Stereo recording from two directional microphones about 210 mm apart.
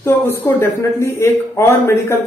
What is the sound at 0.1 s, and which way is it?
Speech, 10° left (ahead or behind).